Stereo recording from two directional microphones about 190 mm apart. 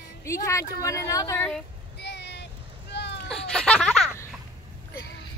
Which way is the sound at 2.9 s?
65° left (ahead or behind).